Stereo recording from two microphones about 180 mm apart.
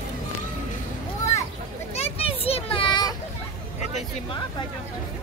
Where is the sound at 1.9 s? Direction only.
35° left (ahead or behind).